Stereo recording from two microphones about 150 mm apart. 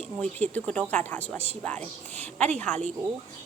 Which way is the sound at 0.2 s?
10° left (ahead or behind).